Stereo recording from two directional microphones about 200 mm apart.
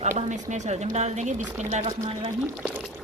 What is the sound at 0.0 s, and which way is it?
A woman's voice, 35° right (ahead or behind).